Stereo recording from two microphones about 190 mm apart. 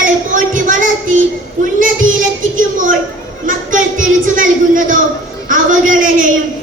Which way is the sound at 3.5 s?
45° right (ahead or behind).